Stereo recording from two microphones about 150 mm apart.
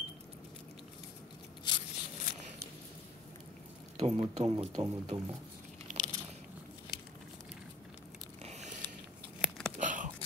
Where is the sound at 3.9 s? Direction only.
45° right (ahead or behind).